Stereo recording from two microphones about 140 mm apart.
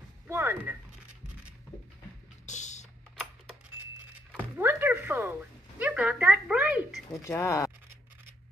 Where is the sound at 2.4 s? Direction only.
60° left (ahead or behind).